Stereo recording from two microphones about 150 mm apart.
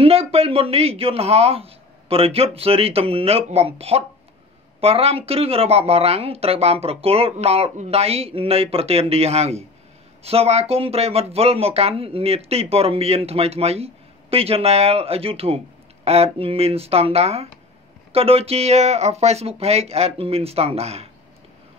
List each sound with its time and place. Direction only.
0.0 s speech: 40° right (ahead or behind)